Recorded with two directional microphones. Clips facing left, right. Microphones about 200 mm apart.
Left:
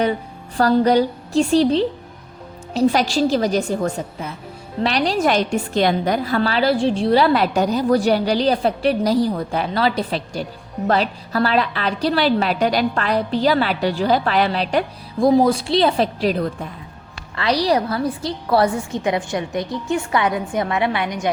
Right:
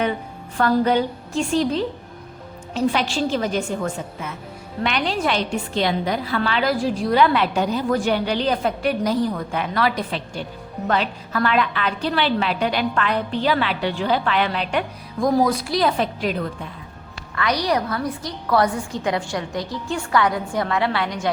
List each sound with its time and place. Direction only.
0.5 s a woman's voice: 35° left (ahead or behind); by 21.2 s 20° left (ahead or behind)